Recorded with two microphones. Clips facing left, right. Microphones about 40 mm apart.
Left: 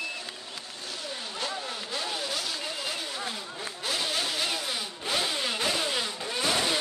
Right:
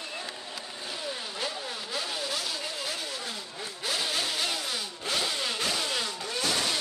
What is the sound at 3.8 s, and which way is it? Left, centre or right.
Motorcycle, centre.